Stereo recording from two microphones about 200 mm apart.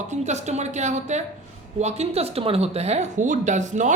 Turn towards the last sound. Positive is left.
turn(degrees=-35)  # may be behind; listen again after turning